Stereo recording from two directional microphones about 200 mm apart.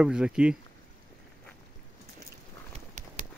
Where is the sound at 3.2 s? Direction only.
40° right (ahead or behind).